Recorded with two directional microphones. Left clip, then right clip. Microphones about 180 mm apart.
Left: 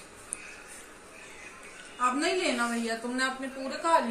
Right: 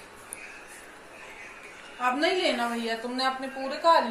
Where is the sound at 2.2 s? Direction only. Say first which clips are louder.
Right 3 dB; 25° left (ahead or behind).